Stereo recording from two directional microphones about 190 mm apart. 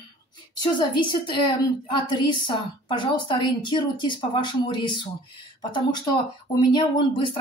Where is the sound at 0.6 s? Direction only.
25° left (ahead or behind).